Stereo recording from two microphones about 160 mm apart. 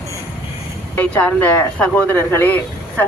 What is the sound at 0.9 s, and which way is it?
Speech, 10° left (ahead or behind).